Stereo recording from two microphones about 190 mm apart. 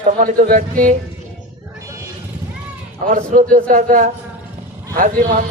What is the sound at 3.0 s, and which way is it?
A man's voice, 45° right (ahead or behind).